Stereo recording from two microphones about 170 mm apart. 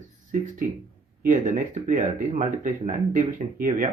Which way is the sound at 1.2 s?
50° right (ahead or behind).